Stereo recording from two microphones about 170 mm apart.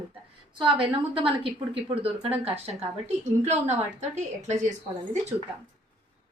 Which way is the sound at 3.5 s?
40° right (ahead or behind).